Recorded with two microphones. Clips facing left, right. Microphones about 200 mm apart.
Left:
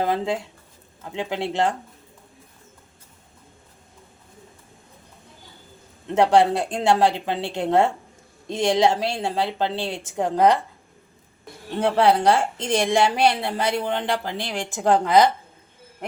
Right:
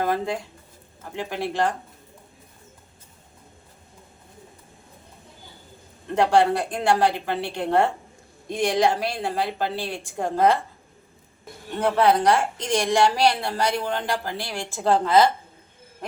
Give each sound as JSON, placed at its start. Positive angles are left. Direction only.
{"t": 0.0, "sound": "a woman's voice", "side_deg": 20}
{"t": 6.1, "sound": "a woman's voice", "side_deg": 20}
{"t": 11.9, "sound": "a woman's voice", "side_deg": 30}